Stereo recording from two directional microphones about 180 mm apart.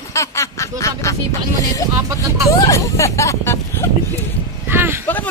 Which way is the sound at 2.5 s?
15° left (ahead or behind).